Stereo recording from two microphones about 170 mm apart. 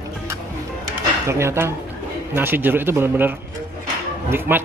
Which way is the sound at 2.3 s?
10° right (ahead or behind).